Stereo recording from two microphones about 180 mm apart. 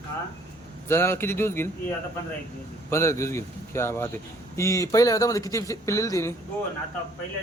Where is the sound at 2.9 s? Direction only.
15° left (ahead or behind).